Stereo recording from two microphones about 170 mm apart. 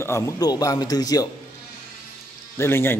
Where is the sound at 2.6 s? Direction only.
15° left (ahead or behind).